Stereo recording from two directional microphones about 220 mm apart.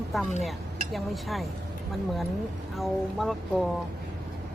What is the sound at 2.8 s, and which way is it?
Speech, centre (ahead or behind).